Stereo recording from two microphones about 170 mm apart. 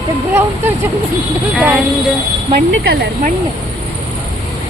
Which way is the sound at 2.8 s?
65° right (ahead or behind).